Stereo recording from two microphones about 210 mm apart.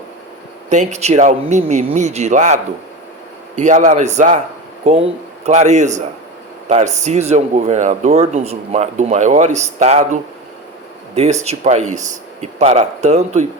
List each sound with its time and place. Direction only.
0.7 s a man's voice: 35° right (ahead or behind)